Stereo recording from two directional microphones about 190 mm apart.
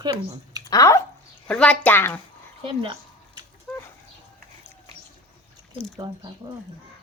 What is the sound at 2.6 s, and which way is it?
Speech, 30° right (ahead or behind).